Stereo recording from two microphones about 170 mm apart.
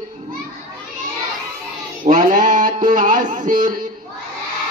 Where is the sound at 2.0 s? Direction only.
55° right (ahead or behind).